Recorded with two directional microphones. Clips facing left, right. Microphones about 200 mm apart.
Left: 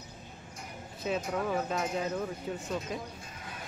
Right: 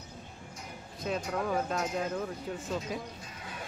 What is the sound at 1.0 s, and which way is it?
Speech, 5° left (ahead or behind).